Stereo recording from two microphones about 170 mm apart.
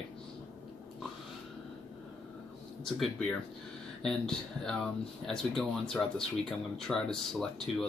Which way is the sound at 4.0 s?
5° left (ahead or behind).